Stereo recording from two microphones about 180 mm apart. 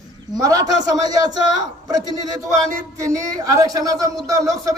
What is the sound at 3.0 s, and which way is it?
A man's voice, 20° right (ahead or behind).